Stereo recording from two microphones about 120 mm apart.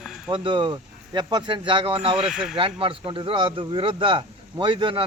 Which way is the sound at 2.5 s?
45° right (ahead or behind).